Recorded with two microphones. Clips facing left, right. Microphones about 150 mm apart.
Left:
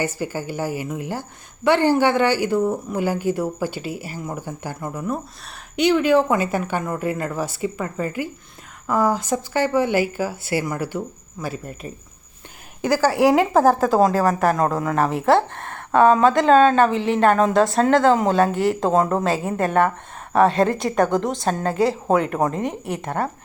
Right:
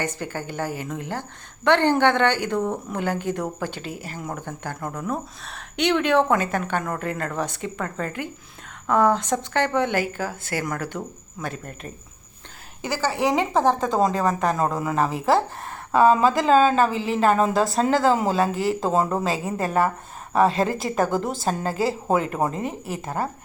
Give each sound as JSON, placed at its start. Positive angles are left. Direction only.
{"t": 0.0, "sound": "a woman's voice", "side_deg": 10}